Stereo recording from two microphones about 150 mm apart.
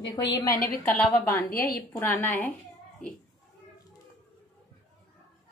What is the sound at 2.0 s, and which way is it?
Speech, 15° left (ahead or behind).